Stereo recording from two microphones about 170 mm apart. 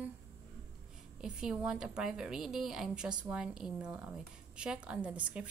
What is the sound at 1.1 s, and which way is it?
A woman's voice, 5° right (ahead or behind).